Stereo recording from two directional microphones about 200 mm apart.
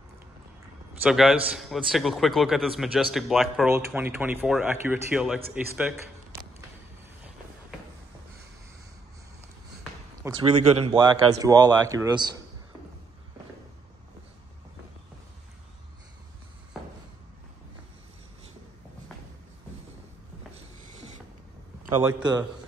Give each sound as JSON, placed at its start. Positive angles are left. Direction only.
{"t": 1.0, "sound": "a man's voice", "side_deg": -5}
{"t": 10.2, "sound": "speech", "side_deg": -20}